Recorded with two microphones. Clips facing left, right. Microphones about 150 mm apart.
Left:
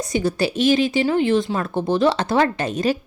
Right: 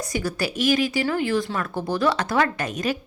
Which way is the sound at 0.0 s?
25° left (ahead or behind).